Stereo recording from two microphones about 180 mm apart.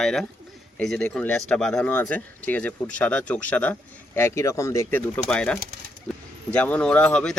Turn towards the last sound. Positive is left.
turn(degrees=5)  # may be behind; listen again after turning